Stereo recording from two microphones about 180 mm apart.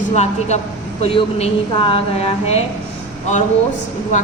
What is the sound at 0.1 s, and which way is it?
A woman's voice, 40° left (ahead or behind).